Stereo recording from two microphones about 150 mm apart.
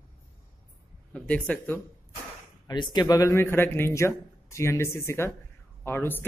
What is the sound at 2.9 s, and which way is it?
A man's voice, 25° left (ahead or behind).